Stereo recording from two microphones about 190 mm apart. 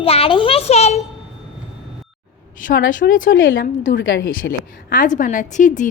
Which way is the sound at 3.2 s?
90° left.